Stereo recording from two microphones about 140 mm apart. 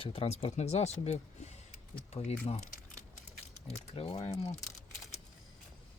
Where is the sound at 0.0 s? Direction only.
45° left (ahead or behind).